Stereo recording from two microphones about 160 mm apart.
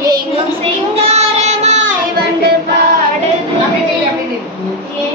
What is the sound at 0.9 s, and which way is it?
Child singing, 40° right (ahead or behind).